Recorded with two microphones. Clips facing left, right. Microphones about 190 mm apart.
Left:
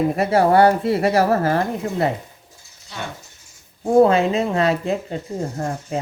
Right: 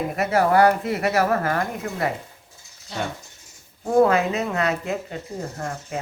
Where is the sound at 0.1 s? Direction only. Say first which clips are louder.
Left 4 dB; 30° left (ahead or behind).